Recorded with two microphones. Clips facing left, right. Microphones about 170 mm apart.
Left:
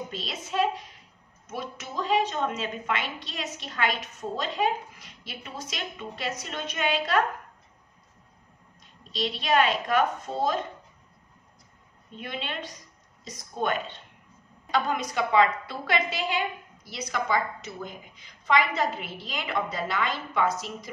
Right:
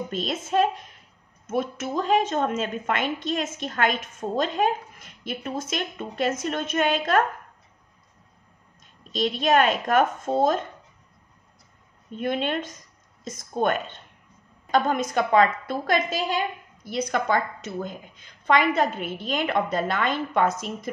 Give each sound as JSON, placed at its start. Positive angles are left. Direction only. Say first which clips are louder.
{"t": 0.1, "sound": "a woman's voice", "louder": "right 8 dB", "side_deg": -50}
{"t": 9.1, "sound": "a woman's voice", "louder": "right 4 dB", "side_deg": -45}
{"t": 12.2, "sound": "a woman's voice", "louder": "right 9 dB", "side_deg": -50}